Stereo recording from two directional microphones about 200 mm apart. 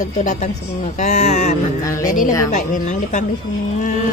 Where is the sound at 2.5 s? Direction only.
35° left (ahead or behind).